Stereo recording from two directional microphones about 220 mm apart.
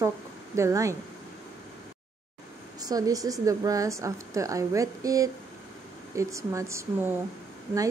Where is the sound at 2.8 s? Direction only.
15° right (ahead or behind).